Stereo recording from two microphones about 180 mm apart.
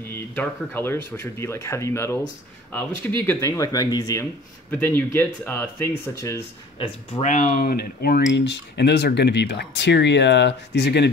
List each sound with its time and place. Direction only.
0.1 s speech: 10° left (ahead or behind)
6.8 s speech: 35° left (ahead or behind); by 11.1 s 70° left (ahead or behind)